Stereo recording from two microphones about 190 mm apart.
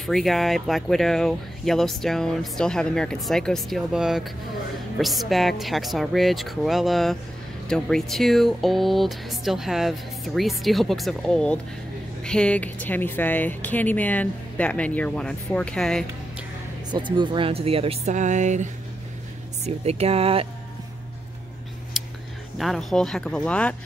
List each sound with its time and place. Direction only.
0.0 s speech: centre (ahead or behind)
16.9 s speech: 25° right (ahead or behind)
22.0 s a sound: centre (ahead or behind)
22.6 s speech: centre (ahead or behind)